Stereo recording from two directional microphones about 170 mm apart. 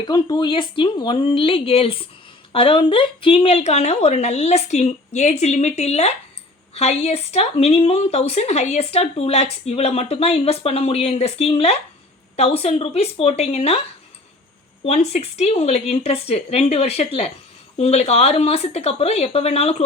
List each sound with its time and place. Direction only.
0.1 s speech: 25° left (ahead or behind)
14.8 s speech: 35° left (ahead or behind)